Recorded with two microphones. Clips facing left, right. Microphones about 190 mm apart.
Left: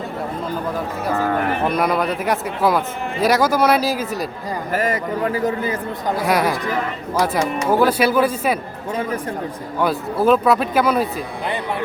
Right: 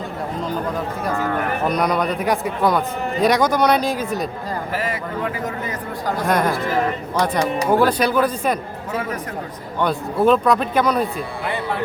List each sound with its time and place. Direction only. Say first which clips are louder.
1.6 s a man's voice: right 1 dB; 5° left (ahead or behind)
4.7 s a man's voice: left 7 dB; 45° left (ahead or behind)
6.1 s speech: left 1 dB; 5° left (ahead or behind)
7.7 s speech: left 2 dB; 5° left (ahead or behind)
9.8 s a man's voice: even; 5° left (ahead or behind)